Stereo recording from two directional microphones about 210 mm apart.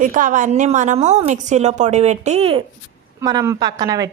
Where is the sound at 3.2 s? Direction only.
15° right (ahead or behind).